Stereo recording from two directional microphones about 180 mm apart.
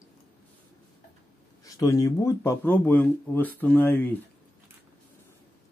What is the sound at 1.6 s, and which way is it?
Speech, 20° left (ahead or behind).